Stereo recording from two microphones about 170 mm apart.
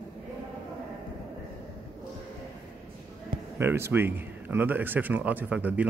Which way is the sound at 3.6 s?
15° right (ahead or behind).